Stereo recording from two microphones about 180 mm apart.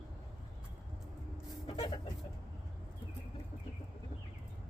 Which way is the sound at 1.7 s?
30° left (ahead or behind).